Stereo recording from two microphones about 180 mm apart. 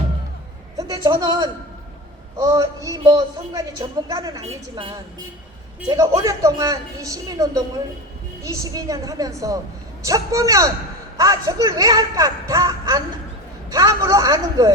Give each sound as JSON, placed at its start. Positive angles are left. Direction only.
{"t": 0.8, "sound": "a man's voice", "side_deg": -20}